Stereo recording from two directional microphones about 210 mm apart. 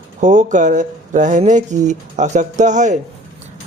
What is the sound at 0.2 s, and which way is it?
Speech, 35° right (ahead or behind).